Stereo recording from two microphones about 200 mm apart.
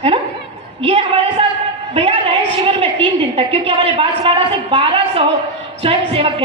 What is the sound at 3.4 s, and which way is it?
Speech, 30° right (ahead or behind).